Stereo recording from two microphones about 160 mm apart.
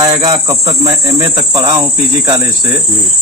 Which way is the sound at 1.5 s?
25° right (ahead or behind).